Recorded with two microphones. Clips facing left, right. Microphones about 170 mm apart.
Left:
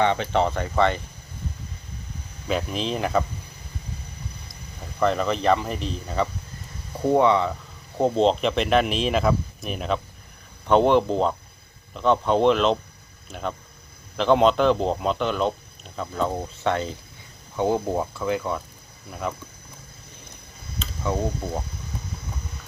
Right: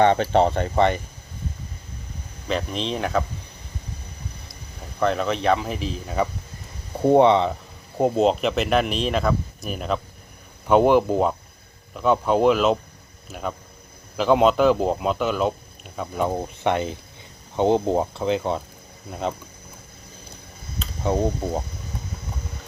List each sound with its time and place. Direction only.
0.0 s speech: 40° right (ahead or behind)
2.5 s speech: 5° left (ahead or behind)
4.9 s speech: centre (ahead or behind)
7.0 s speech: 25° right (ahead or behind)
7.9 s speech: 10° right (ahead or behind); by 18.6 s 25° right (ahead or behind)